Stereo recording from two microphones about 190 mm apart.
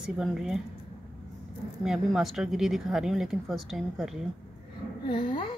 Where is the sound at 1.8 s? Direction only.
Centre (ahead or behind).